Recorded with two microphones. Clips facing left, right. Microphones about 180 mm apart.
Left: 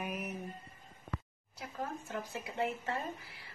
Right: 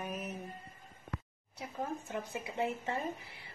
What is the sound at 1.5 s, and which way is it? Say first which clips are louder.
Speech: right 2 dB; 20° right (ahead or behind).